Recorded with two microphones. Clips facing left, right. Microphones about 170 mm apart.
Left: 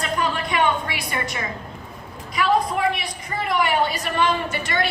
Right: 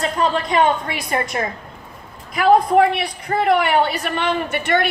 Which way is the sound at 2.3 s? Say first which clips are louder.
Right 7 dB; 55° right (ahead or behind).